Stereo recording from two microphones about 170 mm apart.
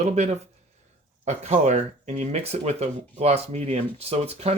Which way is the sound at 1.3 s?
40° right (ahead or behind).